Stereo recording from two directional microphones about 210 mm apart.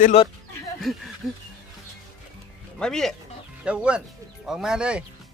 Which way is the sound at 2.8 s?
Centre (ahead or behind).